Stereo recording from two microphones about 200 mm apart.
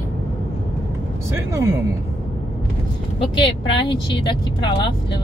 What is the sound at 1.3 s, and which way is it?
Speech, 15° right (ahead or behind).